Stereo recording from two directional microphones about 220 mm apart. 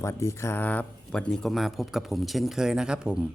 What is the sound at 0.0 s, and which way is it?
Speech, 15° left (ahead or behind).